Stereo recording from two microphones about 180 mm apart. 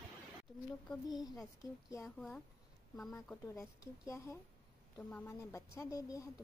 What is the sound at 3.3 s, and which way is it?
Speech, 15° left (ahead or behind).